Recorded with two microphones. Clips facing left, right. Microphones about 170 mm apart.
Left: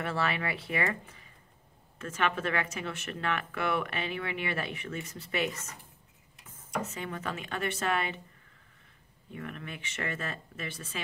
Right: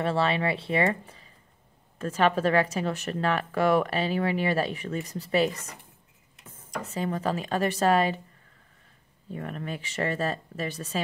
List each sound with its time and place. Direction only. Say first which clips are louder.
0.0 s speech: right 7 dB; 30° right (ahead or behind)
9.3 s speech: right 6 dB; 35° right (ahead or behind)